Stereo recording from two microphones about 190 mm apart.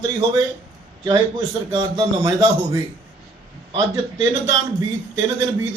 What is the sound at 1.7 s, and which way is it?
A man's voice, 20° right (ahead or behind).